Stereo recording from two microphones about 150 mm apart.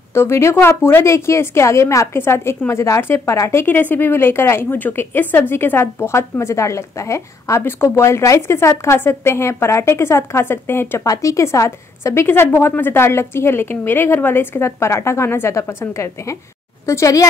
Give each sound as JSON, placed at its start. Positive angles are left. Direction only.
{"t": 0.1, "sound": "a woman's voice", "side_deg": 15}